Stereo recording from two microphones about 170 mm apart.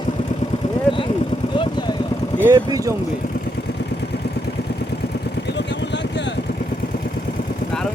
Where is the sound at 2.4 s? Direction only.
15° right (ahead or behind).